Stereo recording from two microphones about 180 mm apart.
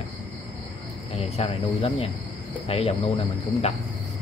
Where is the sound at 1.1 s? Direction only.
35° left (ahead or behind).